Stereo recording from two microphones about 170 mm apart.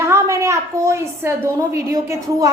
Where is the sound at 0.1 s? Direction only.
15° right (ahead or behind).